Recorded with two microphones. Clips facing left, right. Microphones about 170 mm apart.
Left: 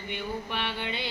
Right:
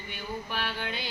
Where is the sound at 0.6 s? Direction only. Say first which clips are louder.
Left 2 dB; 25° left (ahead or behind).